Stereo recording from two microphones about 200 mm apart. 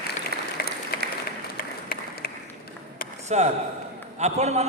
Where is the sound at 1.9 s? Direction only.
45° left (ahead or behind).